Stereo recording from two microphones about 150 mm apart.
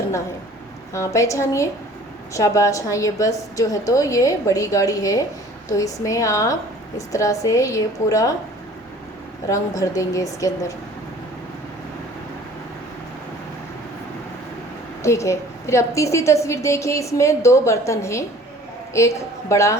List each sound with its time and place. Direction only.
0.9 s a woman's voice: 20° left (ahead or behind)
9.5 s a woman's voice: 20° left (ahead or behind)
15.0 s a woman's voice: 20° left (ahead or behind)